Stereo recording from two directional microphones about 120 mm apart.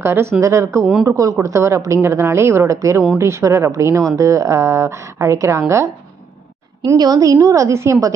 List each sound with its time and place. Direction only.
0.0 s speech: 20° right (ahead or behind)
7.0 s speech: 30° right (ahead or behind)